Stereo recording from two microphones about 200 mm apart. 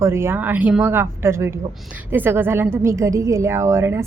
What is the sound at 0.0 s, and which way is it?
A woman's voice, 15° right (ahead or behind).